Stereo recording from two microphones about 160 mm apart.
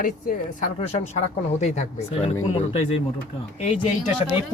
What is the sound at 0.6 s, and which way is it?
Speech, 45° left (ahead or behind).